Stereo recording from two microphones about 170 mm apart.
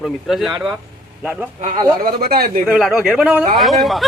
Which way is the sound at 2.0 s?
60° right (ahead or behind).